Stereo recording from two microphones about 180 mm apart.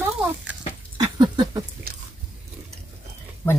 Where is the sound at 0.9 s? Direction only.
25° right (ahead or behind).